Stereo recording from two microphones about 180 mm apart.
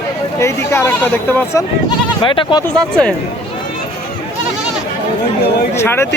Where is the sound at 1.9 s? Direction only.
30° left (ahead or behind).